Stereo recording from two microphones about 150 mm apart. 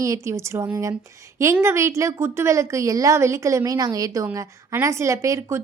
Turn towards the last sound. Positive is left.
turn(degrees=-20)  # may be behind; listen again after turning